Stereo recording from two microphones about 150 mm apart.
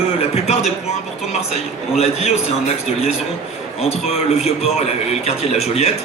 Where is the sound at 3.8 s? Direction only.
45° left (ahead or behind).